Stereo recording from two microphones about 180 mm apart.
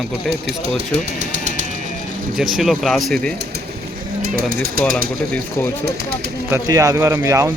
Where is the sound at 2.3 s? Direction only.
Centre (ahead or behind).